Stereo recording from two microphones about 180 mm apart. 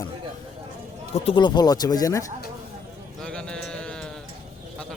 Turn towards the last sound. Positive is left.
turn(degrees=5)  # may be behind; listen again after turning